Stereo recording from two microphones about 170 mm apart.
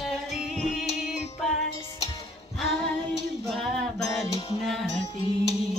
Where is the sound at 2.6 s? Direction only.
Centre (ahead or behind).